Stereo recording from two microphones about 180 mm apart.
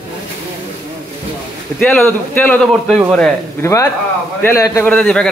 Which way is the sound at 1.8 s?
10° left (ahead or behind).